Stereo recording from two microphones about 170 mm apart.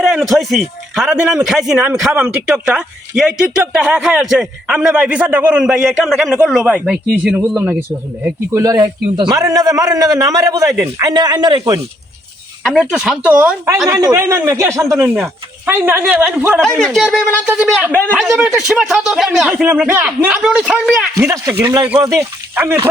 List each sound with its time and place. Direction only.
0.0 s a man's voice: centre (ahead or behind); by 11.8 s 25° right (ahead or behind)
12.6 s speech: 5° right (ahead or behind)
13.9 s speech: 20° right (ahead or behind)
16.6 s speech: 5° left (ahead or behind)
21.2 s a man's voice: 20° right (ahead or behind)